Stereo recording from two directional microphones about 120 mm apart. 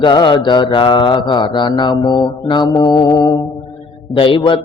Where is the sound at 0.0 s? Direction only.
40° left (ahead or behind).